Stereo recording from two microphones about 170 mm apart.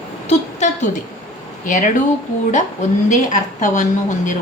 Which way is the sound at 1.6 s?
50° left (ahead or behind).